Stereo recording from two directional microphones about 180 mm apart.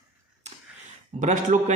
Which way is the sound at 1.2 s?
45° right (ahead or behind).